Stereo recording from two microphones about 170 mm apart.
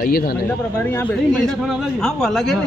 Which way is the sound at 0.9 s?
15° left (ahead or behind).